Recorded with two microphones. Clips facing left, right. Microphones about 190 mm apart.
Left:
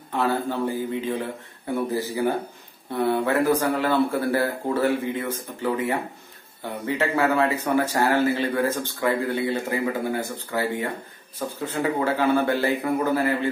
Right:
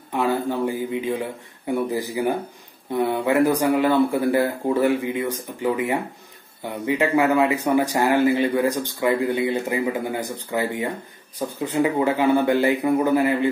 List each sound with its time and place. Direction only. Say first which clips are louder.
0.1 s speech: right 2 dB; 15° right (ahead or behind)